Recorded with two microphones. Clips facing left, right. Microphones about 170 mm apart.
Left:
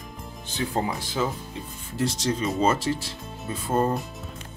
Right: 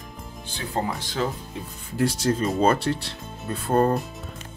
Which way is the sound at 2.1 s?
50° right (ahead or behind).